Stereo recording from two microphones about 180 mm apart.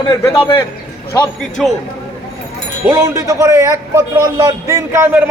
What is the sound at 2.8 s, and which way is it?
A man's voice, 15° right (ahead or behind).